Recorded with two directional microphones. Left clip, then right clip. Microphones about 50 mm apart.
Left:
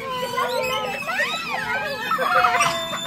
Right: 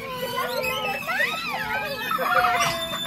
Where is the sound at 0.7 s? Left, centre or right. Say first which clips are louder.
Left 1 dB; centre.